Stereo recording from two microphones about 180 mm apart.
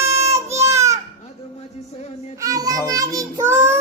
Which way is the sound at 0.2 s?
15° right (ahead or behind).